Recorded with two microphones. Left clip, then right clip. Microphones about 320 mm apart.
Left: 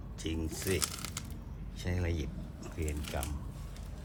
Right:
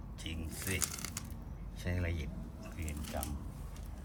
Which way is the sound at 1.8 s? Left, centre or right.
Centre.